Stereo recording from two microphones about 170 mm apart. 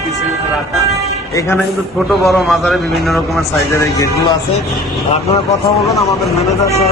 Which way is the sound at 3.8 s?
20° left (ahead or behind).